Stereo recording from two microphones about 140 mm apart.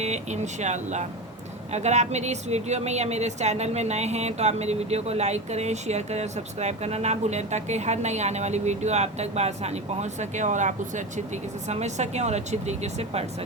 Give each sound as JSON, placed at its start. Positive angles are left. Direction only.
{"t": 0.0, "sound": "speech", "side_deg": -55}